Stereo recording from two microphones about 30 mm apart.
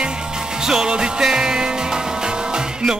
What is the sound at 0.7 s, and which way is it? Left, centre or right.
Music, right.